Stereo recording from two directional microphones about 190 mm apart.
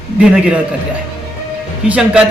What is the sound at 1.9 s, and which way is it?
Speech, 5° right (ahead or behind).